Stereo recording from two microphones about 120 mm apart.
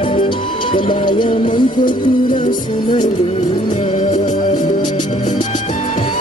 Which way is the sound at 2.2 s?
40° left (ahead or behind).